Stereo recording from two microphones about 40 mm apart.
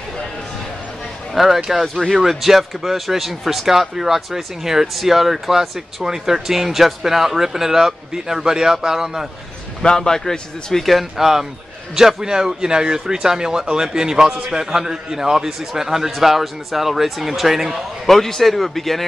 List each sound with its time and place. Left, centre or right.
1.3 s speech: centre
9.8 s a man's voice: centre
11.1 s speech: centre
18.0 s speech: centre